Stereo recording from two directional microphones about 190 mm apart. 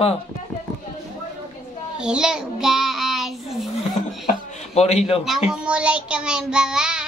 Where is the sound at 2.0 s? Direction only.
5° right (ahead or behind).